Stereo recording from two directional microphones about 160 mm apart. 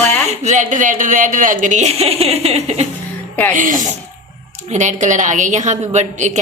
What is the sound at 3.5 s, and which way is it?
A woman's voice, 55° right (ahead or behind).